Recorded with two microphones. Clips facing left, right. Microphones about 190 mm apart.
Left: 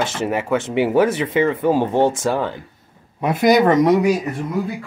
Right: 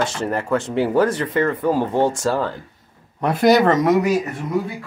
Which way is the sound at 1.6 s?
25° left (ahead or behind).